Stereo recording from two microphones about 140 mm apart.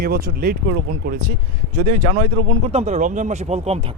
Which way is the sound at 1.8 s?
55° right (ahead or behind).